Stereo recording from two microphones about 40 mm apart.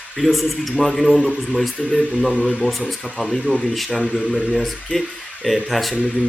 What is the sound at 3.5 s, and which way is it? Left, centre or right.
Speech, right.